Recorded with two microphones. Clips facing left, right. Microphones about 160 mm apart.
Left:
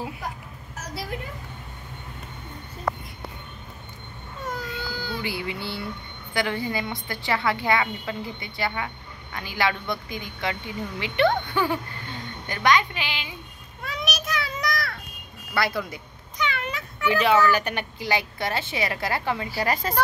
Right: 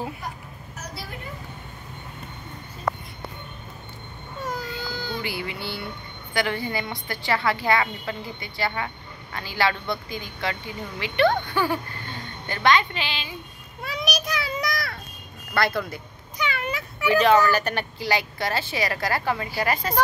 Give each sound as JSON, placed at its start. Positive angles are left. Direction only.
{"t": 4.5, "sound": "baby cry", "side_deg": 5}
{"t": 5.2, "sound": "a man's voice", "side_deg": 25}
{"t": 13.8, "sound": "a sound", "side_deg": 0}
{"t": 15.5, "sound": "speech", "side_deg": 10}
{"t": 16.3, "sound": "a sound", "side_deg": -5}
{"t": 17.5, "sound": "speech", "side_deg": 15}